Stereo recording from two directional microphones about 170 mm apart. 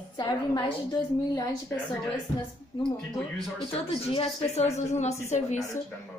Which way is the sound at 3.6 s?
35° left (ahead or behind).